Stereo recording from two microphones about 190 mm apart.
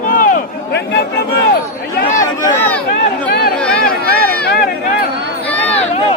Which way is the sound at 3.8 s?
55° left (ahead or behind).